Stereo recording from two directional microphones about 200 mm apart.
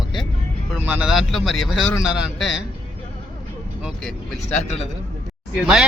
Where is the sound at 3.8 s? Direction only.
Centre (ahead or behind).